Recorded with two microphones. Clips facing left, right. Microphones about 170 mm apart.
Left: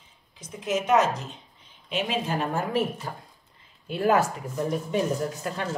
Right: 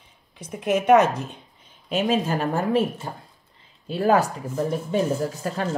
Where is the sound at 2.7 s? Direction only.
25° right (ahead or behind).